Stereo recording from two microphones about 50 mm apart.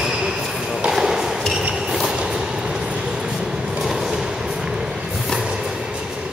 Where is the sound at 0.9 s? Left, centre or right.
Centre.